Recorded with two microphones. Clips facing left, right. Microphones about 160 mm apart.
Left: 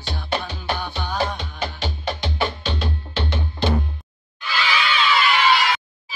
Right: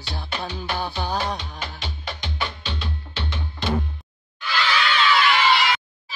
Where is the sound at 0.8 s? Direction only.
35° right (ahead or behind).